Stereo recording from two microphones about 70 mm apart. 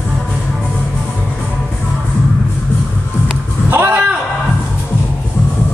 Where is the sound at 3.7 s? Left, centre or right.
Right.